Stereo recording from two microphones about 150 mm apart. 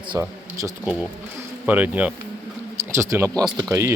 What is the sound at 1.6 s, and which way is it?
Speech, 10° right (ahead or behind).